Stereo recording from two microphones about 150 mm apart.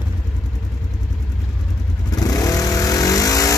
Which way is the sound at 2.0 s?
25° left (ahead or behind).